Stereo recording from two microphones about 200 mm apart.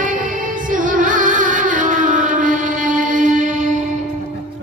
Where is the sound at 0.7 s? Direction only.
40° right (ahead or behind).